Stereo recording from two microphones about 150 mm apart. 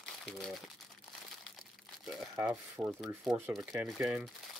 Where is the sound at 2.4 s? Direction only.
20° right (ahead or behind).